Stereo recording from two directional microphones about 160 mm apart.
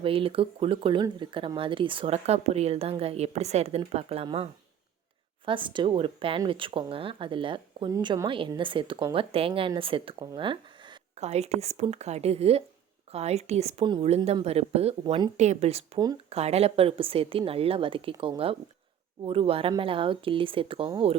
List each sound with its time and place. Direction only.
0.0 s speech: 35° right (ahead or behind)
5.5 s speech: 30° right (ahead or behind)
15.0 s speech: 25° right (ahead or behind)
15.4 s speech: 45° right (ahead or behind)